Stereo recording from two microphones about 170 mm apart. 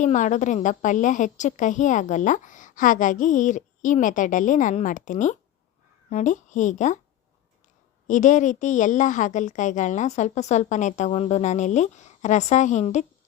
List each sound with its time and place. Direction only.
0.0 s a woman's voice: 45° left (ahead or behind)
8.0 s a woman's voice: 45° left (ahead or behind)